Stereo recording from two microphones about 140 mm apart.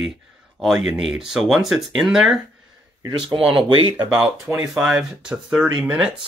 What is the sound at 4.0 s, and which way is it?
Speech, centre (ahead or behind).